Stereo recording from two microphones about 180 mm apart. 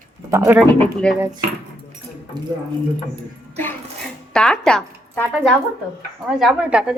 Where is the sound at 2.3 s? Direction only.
25° right (ahead or behind).